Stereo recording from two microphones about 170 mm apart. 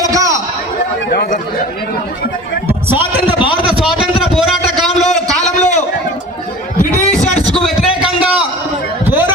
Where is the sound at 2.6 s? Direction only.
10° right (ahead or behind).